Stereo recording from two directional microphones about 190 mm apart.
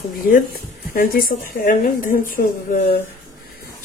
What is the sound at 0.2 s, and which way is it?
A woman's voice, 45° left (ahead or behind).